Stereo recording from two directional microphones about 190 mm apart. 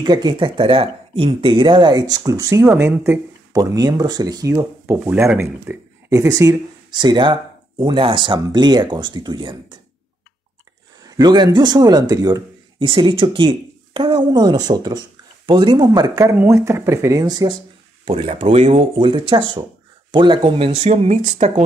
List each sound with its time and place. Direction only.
0.0 s speech: 20° right (ahead or behind)
11.1 s speech: 20° right (ahead or behind); by 21.6 s 40° right (ahead or behind)